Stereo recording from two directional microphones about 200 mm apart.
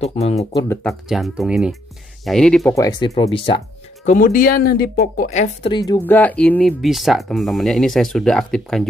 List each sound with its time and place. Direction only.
0.0 s speech: 30° left (ahead or behind)
0.4 s speech: 15° left (ahead or behind)
0.8 s speech: centre (ahead or behind)
2.6 s speech: 15° left (ahead or behind)
4.0 s a woman's voice: 40° left (ahead or behind)
5.7 s speech: 20° left (ahead or behind)
6.0 s speech: 10° left (ahead or behind)